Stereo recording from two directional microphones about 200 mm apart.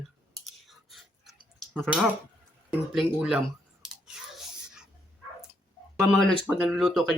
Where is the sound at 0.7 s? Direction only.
Centre (ahead or behind).